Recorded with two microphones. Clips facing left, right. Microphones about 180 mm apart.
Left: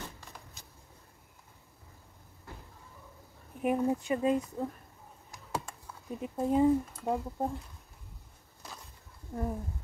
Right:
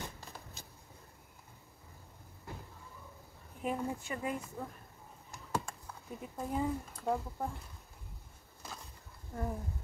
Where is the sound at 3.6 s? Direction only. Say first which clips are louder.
Left 8 dB; 25° left (ahead or behind).